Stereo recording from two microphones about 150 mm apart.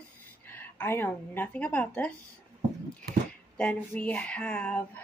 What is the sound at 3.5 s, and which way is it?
Speech, 10° left (ahead or behind).